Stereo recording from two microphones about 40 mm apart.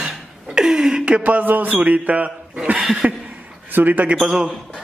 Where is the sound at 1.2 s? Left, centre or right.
Right.